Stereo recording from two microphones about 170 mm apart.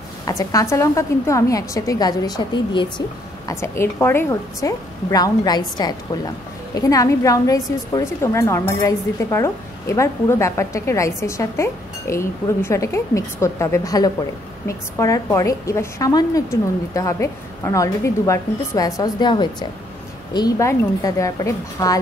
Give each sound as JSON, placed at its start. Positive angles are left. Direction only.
{"t": 0.2, "sound": "a woman's voice", "side_deg": 20}
{"t": 3.4, "sound": "a woman's voice", "side_deg": 15}